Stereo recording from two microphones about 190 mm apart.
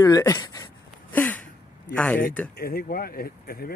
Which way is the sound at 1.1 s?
10° left (ahead or behind).